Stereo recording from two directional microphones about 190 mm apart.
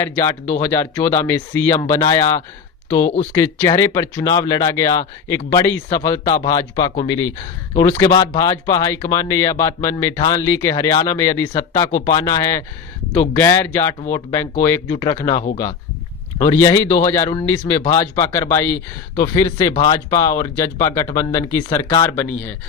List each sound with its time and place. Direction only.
0.0 s speech: 15° left (ahead or behind)
3.6 s speech: 20° left (ahead or behind)
11.9 s speech: 40° left (ahead or behind)
12.1 s speech: 20° left (ahead or behind)